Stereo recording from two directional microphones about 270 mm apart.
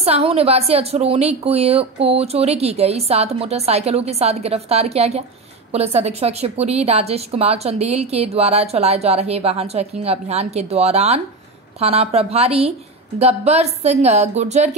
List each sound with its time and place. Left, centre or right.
0.0 s a woman's voice: right